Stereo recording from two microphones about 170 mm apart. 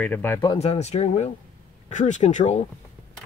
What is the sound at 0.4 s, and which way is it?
Speech, 30° left (ahead or behind).